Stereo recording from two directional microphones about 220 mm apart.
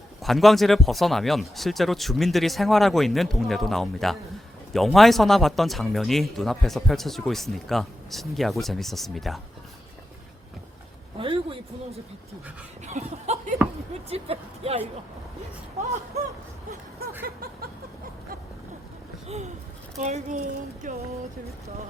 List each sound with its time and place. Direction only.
0.2 s speech: centre (ahead or behind)
11.2 s speech: 25° right (ahead or behind)
20.0 s speech: 30° right (ahead or behind)